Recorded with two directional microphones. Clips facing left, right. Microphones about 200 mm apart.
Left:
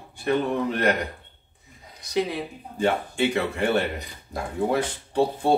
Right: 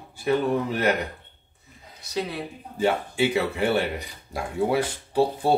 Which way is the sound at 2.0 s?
15° left (ahead or behind).